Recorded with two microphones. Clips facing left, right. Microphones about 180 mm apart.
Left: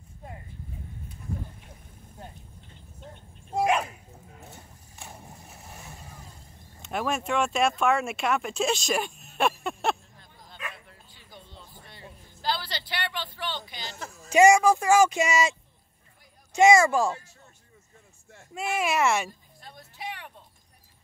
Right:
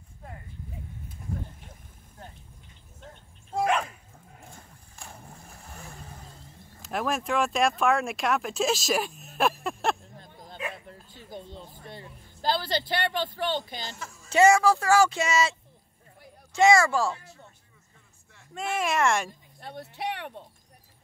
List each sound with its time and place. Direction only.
3.6 s bow-wow: 10° left (ahead or behind)
4.9 s boat: 5° left (ahead or behind)
6.8 s speech: centre (ahead or behind)
10.1 s bow-wow: 45° right (ahead or behind)
11.1 s a sound: 45° right (ahead or behind)
14.3 s speech: 15° left (ahead or behind)
16.5 s speech: 20° left (ahead or behind)
18.5 s speech: 5° left (ahead or behind)
19.6 s speech: 65° right (ahead or behind)